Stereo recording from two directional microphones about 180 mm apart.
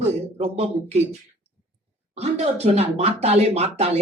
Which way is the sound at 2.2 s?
35° right (ahead or behind).